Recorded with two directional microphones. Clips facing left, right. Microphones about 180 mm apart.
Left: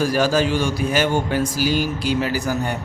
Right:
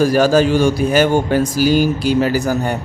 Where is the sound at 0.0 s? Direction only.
45° right (ahead or behind).